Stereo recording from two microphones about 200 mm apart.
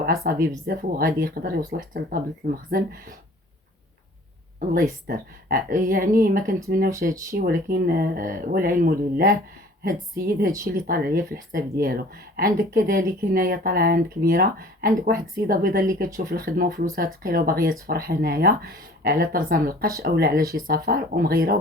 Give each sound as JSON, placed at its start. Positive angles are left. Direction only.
{"t": 0.0, "sound": "speech", "side_deg": -50}
{"t": 4.7, "sound": "speech", "side_deg": -50}
{"t": 7.1, "sound": "speech", "side_deg": -15}
{"t": 7.3, "sound": "speech", "side_deg": -50}